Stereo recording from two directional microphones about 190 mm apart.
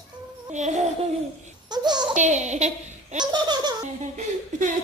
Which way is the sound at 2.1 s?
40° right (ahead or behind).